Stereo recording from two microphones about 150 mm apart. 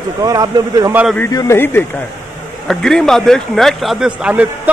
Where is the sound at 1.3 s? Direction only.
20° left (ahead or behind).